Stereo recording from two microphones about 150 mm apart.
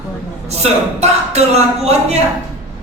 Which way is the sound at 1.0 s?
45° right (ahead or behind).